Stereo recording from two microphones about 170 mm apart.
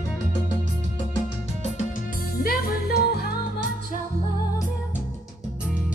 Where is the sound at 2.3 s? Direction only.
60° left (ahead or behind).